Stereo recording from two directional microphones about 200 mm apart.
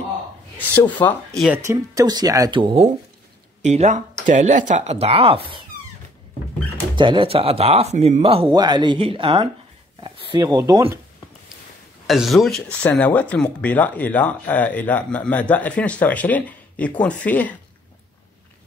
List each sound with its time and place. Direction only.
1.0 s speech: centre (ahead or behind)
1.5 s speech: 15° right (ahead or behind)
7.0 s speech: 25° right (ahead or behind)
12.1 s speech: centre (ahead or behind)